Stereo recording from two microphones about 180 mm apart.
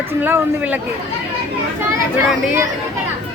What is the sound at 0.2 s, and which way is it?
Speech, 10° right (ahead or behind).